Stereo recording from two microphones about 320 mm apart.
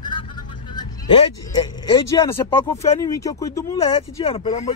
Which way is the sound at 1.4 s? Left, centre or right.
Centre.